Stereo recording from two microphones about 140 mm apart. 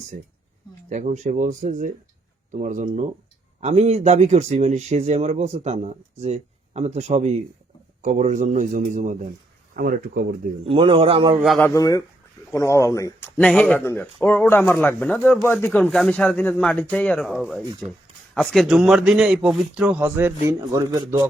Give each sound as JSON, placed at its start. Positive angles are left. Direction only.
{"t": 0.9, "sound": "a man's voice", "side_deg": -60}
{"t": 9.7, "sound": "speech", "side_deg": -90}
{"t": 10.6, "sound": "a man's voice", "side_deg": -40}
{"t": 11.6, "sound": "a man's voice", "side_deg": 25}